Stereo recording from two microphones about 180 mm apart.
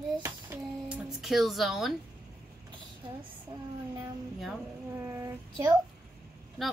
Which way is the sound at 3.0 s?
25° right (ahead or behind).